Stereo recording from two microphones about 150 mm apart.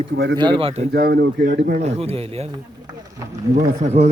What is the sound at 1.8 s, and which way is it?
Speech, 40° right (ahead or behind).